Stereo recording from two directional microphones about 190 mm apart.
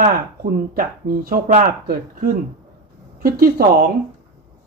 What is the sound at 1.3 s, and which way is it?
Speech, 50° right (ahead or behind).